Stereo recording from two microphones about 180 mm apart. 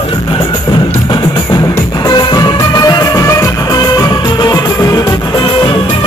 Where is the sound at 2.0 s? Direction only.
25° left (ahead or behind).